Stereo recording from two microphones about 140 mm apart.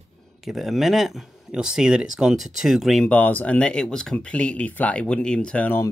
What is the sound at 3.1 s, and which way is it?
Speech, 10° left (ahead or behind).